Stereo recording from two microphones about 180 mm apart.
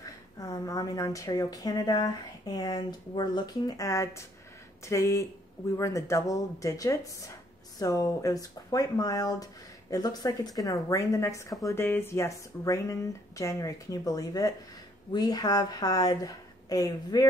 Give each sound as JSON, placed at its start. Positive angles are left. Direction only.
{"t": 0.0, "sound": "speech", "side_deg": 20}